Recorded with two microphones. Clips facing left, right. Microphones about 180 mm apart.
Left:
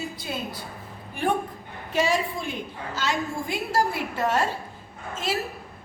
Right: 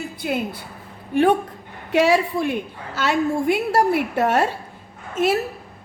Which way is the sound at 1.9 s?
70° right (ahead or behind).